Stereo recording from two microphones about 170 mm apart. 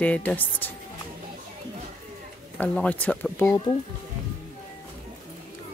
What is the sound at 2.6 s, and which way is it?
Speech, 10° left (ahead or behind).